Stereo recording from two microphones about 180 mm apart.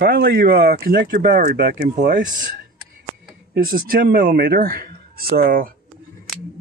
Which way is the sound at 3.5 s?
50° right (ahead or behind).